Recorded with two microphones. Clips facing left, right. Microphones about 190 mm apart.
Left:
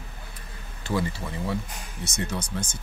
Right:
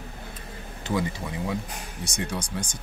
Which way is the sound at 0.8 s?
15° right (ahead or behind).